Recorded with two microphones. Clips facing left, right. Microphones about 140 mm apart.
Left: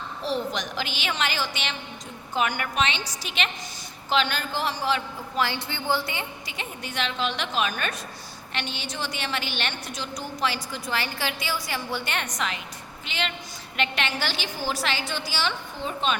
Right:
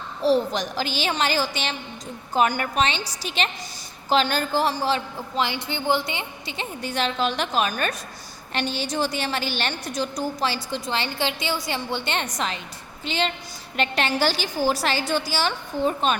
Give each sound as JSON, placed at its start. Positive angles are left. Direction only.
{"t": 0.2, "sound": "a woman's voice", "side_deg": -35}
{"t": 5.4, "sound": "a woman's voice", "side_deg": -15}